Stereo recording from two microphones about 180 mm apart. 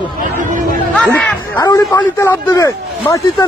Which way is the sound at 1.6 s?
20° left (ahead or behind).